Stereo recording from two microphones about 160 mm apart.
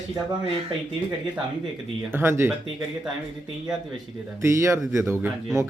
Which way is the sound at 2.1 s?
15° right (ahead or behind).